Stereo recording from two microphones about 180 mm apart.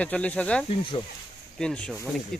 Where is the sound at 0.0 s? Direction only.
5° left (ahead or behind).